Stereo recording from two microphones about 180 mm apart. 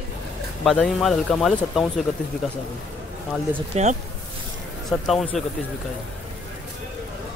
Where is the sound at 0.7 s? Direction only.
Centre (ahead or behind).